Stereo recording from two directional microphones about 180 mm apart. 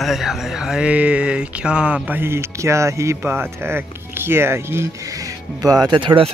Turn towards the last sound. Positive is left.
turn(degrees=-30)  # may be behind; listen again after turning